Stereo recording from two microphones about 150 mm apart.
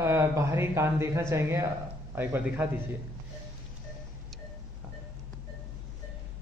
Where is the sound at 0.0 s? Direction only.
20° right (ahead or behind).